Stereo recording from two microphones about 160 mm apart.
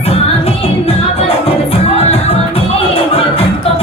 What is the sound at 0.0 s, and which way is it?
Music, 40° left (ahead or behind).